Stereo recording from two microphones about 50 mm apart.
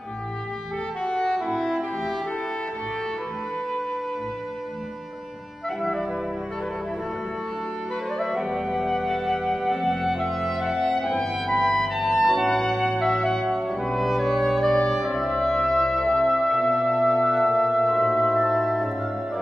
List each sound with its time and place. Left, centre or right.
1.0 s music: centre
1.3 s music: centre
8.2 s music: centre